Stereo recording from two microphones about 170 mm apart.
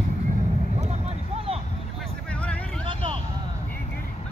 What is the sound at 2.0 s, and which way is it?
Vehicle, 5° left (ahead or behind).